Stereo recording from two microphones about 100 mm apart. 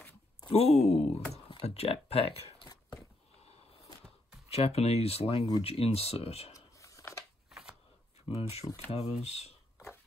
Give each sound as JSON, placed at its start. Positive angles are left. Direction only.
{"t": 0.5, "sound": "speech", "side_deg": 80}
{"t": 2.6, "sound": "a sound", "side_deg": 45}
{"t": 4.5, "sound": "speech", "side_deg": 90}
{"t": 6.5, "sound": "a sound", "side_deg": 35}
{"t": 7.5, "sound": "shuffling cards", "side_deg": -5}
{"t": 8.3, "sound": "speech", "side_deg": 90}